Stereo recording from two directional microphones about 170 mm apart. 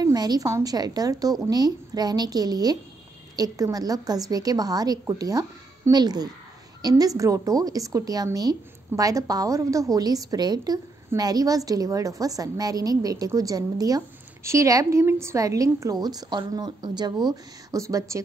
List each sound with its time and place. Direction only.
0.0 s a woman's voice: 20° right (ahead or behind)